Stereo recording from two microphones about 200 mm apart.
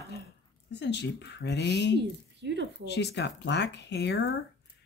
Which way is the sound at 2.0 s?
60° right (ahead or behind).